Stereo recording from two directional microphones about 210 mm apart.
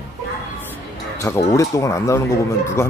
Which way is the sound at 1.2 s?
15° left (ahead or behind).